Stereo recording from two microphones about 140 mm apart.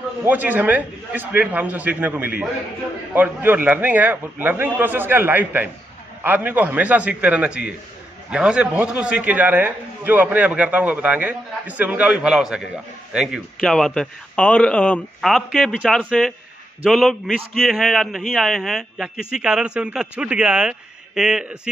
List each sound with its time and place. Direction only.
0.2 s a man's voice: 10° right (ahead or behind)